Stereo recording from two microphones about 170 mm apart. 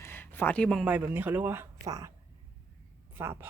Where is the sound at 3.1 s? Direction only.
15° right (ahead or behind).